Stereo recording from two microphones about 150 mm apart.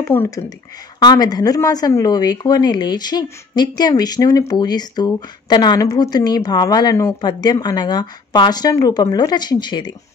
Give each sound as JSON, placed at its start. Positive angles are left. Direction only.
{"t": 0.1, "sound": "speech", "side_deg": 15}
{"t": 0.9, "sound": "speech", "side_deg": 25}